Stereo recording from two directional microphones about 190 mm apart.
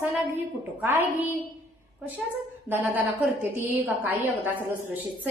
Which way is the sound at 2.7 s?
10° right (ahead or behind).